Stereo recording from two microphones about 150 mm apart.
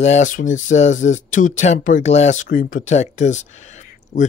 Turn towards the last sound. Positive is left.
turn(degrees=50)  # may be behind; listen again after turning